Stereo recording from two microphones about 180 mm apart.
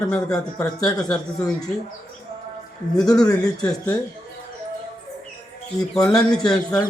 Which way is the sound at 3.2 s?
20° left (ahead or behind).